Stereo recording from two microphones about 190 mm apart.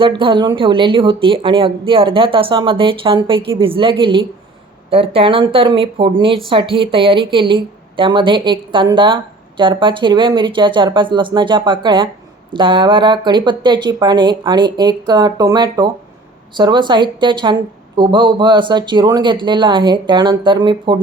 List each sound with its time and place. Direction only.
0.2 s speech: 25° right (ahead or behind)